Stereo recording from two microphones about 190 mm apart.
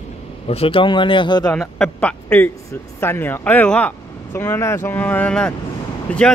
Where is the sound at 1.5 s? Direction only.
5° left (ahead or behind).